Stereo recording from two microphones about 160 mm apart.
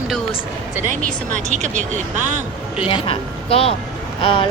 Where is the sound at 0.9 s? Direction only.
50° right (ahead or behind).